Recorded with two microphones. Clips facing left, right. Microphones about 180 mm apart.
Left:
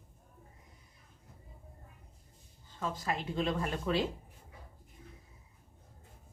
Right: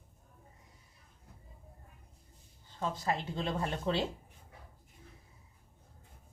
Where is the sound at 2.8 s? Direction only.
25° right (ahead or behind).